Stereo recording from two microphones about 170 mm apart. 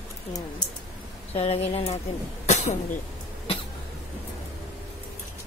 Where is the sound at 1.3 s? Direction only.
35° left (ahead or behind).